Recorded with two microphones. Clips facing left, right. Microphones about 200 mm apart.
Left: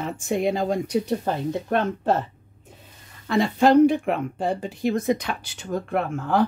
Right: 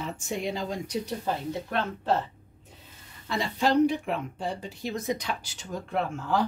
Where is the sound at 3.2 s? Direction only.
55° left (ahead or behind).